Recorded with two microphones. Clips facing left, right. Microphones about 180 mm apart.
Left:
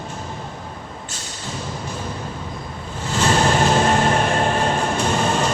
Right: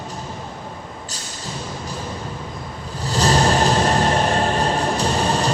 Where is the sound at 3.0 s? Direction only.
35° right (ahead or behind).